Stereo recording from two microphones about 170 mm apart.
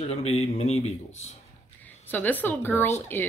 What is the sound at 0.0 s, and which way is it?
Speech, 35° left (ahead or behind).